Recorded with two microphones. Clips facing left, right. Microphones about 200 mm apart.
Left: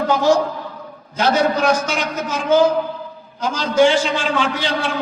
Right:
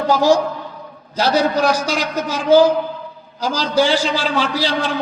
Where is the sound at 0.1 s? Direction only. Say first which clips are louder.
Right 2 dB; 35° right (ahead or behind).